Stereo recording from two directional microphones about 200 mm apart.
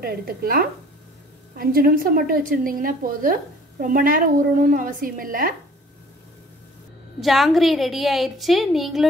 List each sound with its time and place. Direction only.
0.0 s a woman's voice: 50° right (ahead or behind)
7.2 s a woman's voice: centre (ahead or behind)